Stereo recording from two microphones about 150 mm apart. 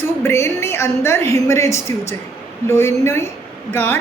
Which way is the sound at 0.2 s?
15° left (ahead or behind).